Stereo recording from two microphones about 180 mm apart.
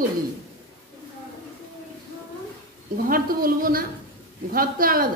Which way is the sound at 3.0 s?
55° right (ahead or behind).